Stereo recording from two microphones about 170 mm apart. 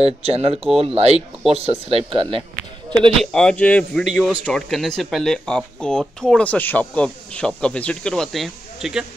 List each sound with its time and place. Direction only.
0.0 s speech: 40° right (ahead or behind)
3.2 s speech: 5° left (ahead or behind)
4.0 s speech: 5° right (ahead or behind)